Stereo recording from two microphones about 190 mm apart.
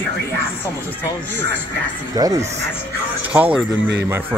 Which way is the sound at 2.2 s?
20° right (ahead or behind).